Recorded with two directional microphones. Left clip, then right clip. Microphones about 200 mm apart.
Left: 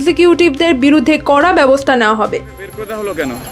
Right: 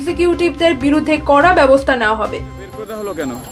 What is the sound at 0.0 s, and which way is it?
Speech, 45° left (ahead or behind).